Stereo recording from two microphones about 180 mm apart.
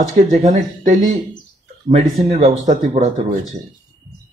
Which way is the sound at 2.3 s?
40° right (ahead or behind).